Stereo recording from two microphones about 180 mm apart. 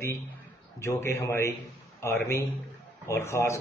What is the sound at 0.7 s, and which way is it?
A man's voice, 15° left (ahead or behind).